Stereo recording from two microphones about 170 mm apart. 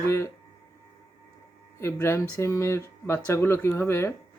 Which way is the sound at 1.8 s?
15° left (ahead or behind).